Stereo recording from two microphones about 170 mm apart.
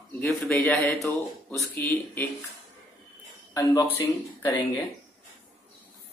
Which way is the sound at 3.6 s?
15° left (ahead or behind).